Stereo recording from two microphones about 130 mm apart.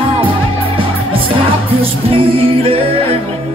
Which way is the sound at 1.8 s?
45° right (ahead or behind).